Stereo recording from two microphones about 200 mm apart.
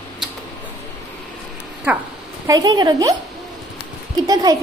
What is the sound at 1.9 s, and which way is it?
Speech, 10° right (ahead or behind).